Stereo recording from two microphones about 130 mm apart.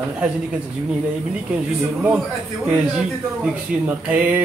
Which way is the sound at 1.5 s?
10° right (ahead or behind).